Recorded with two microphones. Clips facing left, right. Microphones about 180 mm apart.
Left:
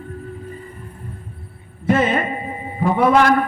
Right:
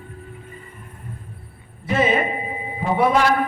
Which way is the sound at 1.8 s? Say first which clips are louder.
Left 2 dB; 50° left (ahead or behind).